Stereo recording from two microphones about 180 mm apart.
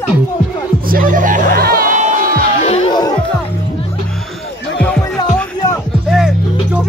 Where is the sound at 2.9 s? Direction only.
25° left (ahead or behind).